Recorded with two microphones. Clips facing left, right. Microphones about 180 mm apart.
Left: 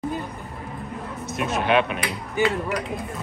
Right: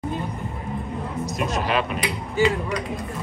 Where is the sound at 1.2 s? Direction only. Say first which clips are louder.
Left 2 dB; centre (ahead or behind).